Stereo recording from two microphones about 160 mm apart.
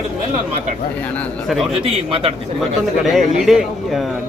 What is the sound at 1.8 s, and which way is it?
Speech, 35° right (ahead or behind).